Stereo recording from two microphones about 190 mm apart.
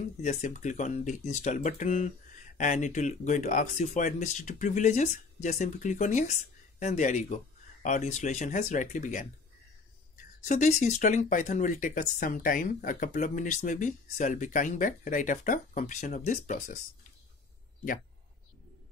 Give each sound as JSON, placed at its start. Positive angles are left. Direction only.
{"t": 0.2, "sound": "speech", "side_deg": 40}
{"t": 10.5, "sound": "speech", "side_deg": 40}